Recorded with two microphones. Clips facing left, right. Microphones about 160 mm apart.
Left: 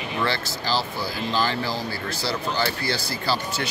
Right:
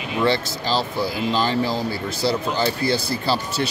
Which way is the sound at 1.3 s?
20° right (ahead or behind).